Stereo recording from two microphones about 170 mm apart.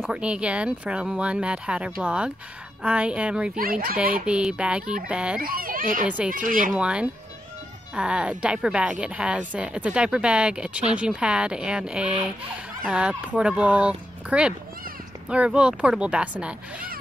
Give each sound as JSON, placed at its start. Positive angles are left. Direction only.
{"t": 0.0, "sound": "speech", "side_deg": -5}
{"t": 3.5, "sound": "a child's voice", "side_deg": -60}
{"t": 4.3, "sound": "speech", "side_deg": -5}
{"t": 5.4, "sound": "a child's voice", "side_deg": -60}
{"t": 6.0, "sound": "speech", "side_deg": -10}
{"t": 6.3, "sound": "speech", "side_deg": -50}
{"t": 6.7, "sound": "speech", "side_deg": -5}